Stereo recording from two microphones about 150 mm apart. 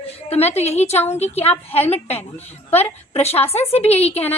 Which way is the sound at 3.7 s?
40° left (ahead or behind).